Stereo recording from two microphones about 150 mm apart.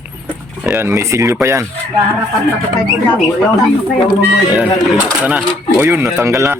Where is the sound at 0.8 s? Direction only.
20° right (ahead or behind).